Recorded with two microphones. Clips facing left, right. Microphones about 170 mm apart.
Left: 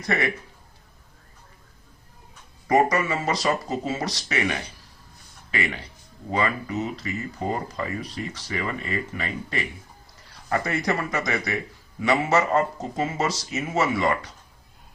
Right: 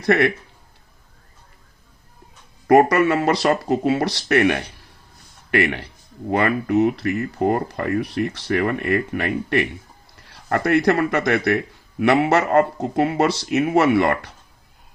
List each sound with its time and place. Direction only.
0.0 s a man's voice: 65° right (ahead or behind)
2.6 s a man's voice: 65° right (ahead or behind)